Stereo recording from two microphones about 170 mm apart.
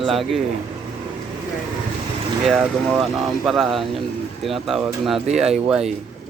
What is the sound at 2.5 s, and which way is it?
Speech, centre (ahead or behind).